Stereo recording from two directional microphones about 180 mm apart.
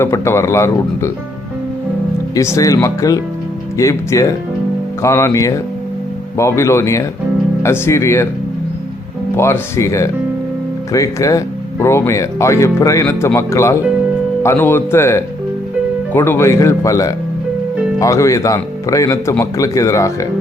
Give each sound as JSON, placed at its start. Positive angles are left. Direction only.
{"t": 0.0, "sound": "speech", "side_deg": 15}
{"t": 2.3, "sound": "speech", "side_deg": 15}
{"t": 9.3, "sound": "speech", "side_deg": 15}